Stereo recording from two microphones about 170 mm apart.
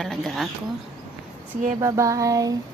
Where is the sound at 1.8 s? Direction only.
20° right (ahead or behind).